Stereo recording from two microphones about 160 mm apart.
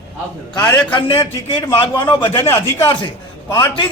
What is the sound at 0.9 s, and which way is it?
A man's voice, 35° left (ahead or behind).